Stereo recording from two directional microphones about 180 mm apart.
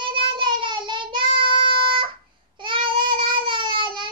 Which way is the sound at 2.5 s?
25° right (ahead or behind).